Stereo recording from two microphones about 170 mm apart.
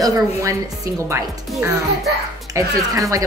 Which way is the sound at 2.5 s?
20° right (ahead or behind).